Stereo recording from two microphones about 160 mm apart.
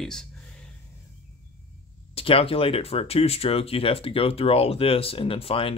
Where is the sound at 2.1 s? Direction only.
35° left (ahead or behind).